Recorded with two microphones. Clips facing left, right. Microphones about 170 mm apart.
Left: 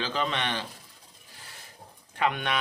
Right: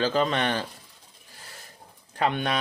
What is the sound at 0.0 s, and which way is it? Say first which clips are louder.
Speech: right 6 dB; 45° right (ahead or behind).